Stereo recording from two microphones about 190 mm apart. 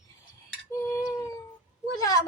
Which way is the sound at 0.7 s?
15° left (ahead or behind).